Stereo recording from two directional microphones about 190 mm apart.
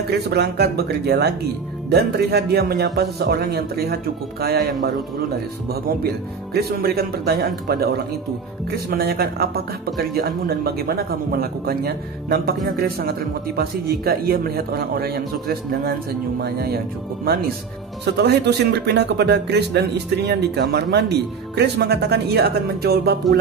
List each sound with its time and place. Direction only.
0.1 s a man's voice: 60° right (ahead or behind)